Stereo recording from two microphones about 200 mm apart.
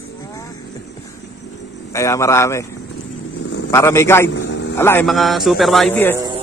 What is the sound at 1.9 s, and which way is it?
Speech, 15° left (ahead or behind).